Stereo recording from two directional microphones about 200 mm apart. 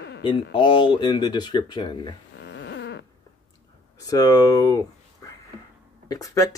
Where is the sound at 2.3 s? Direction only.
60° left (ahead or behind).